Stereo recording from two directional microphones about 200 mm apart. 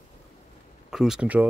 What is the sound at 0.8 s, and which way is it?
Speech, centre (ahead or behind).